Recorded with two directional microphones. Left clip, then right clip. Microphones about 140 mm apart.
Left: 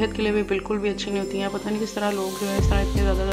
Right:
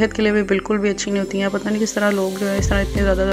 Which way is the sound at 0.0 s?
40° right (ahead or behind).